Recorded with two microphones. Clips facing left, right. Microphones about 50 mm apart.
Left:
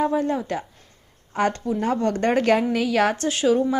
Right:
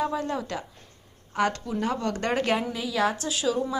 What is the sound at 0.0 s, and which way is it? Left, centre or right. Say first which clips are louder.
A woman's voice: left 6 dB; left.